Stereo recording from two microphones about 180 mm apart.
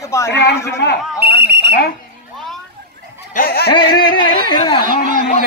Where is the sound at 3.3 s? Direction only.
55° left (ahead or behind).